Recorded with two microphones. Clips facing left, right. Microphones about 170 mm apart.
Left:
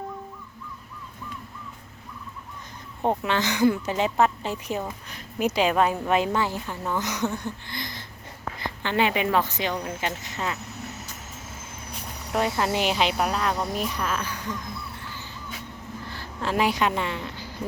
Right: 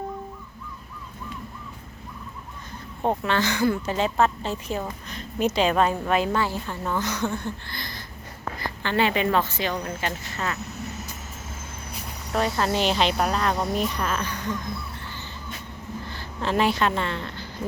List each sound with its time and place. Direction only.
3.0 s a woman's voice: 15° left (ahead or behind)
12.3 s a woman's voice: 15° left (ahead or behind)
15.1 s crow: 5° left (ahead or behind)
16.0 s a woman's voice: 5° left (ahead or behind)